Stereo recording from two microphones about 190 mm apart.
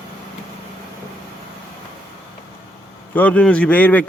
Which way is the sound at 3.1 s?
10° left (ahead or behind).